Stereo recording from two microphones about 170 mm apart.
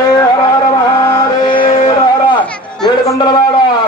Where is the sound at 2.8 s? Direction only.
20° left (ahead or behind).